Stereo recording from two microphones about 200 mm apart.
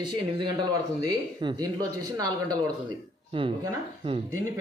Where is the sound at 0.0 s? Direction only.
20° right (ahead or behind).